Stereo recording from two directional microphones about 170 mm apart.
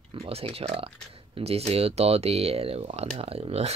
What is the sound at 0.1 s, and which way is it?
Speech, 35° right (ahead or behind).